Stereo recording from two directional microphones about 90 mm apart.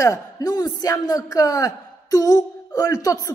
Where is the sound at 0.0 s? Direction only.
40° left (ahead or behind).